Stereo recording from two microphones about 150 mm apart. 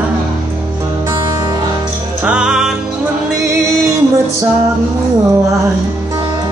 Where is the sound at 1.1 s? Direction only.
25° right (ahead or behind).